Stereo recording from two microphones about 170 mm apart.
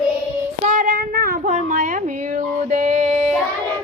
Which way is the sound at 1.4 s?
45° right (ahead or behind).